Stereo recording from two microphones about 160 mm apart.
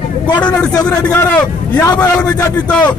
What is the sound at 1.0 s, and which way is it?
A man's voice, 15° left (ahead or behind).